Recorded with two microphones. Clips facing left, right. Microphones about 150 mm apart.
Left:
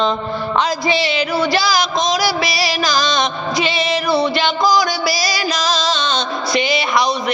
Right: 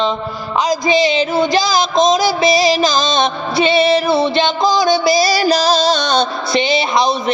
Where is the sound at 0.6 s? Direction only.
20° right (ahead or behind).